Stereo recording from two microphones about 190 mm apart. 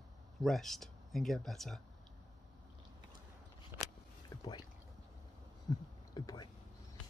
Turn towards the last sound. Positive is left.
turn(degrees=20)  # may be behind; listen again after turning